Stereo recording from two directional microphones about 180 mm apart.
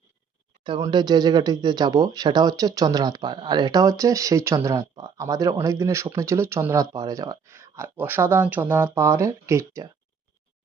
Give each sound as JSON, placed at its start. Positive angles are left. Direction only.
{"t": 0.6, "sound": "speech", "side_deg": -25}